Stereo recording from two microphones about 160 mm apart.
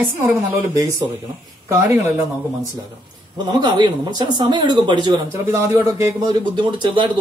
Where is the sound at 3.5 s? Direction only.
25° right (ahead or behind).